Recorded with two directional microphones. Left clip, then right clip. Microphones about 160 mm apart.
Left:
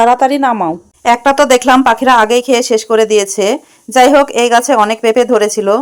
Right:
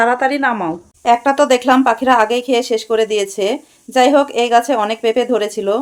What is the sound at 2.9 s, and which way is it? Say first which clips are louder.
Speech: left 5 dB; 30° left (ahead or behind).